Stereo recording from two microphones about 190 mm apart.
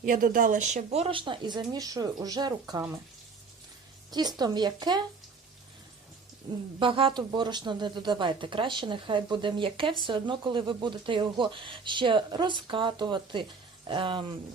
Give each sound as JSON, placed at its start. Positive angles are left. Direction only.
{"t": 0.0, "sound": "speech", "side_deg": -45}
{"t": 4.1, "sound": "speech", "side_deg": -20}
{"t": 6.7, "sound": "speech", "side_deg": -25}